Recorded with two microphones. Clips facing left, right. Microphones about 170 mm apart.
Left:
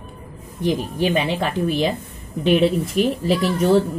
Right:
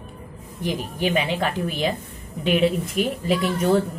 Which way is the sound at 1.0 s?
35° left (ahead or behind).